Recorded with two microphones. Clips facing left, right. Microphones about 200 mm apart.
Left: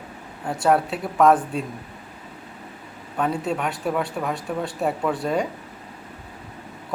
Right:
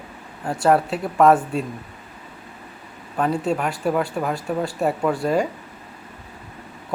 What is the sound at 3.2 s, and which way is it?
Speech, centre (ahead or behind).